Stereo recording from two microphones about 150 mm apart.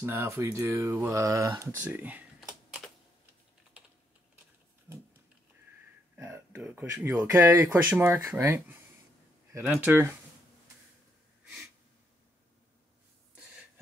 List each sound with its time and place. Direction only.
0.0 s speech: 15° right (ahead or behind)
6.1 s speech: 10° right (ahead or behind)
9.9 s speech: 10° right (ahead or behind)